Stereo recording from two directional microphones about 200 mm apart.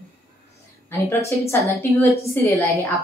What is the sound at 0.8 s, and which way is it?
A woman's voice, 10° left (ahead or behind).